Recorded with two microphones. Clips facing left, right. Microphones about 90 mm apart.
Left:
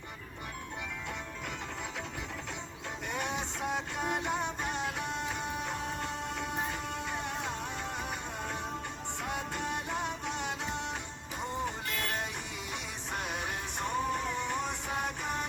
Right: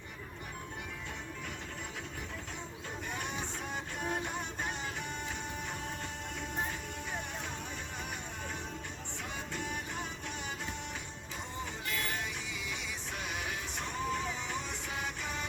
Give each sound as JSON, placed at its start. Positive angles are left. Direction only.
{"t": 3.1, "sound": "music", "side_deg": 65}
{"t": 9.2, "sound": "music", "side_deg": 60}
{"t": 11.6, "sound": "music", "side_deg": 55}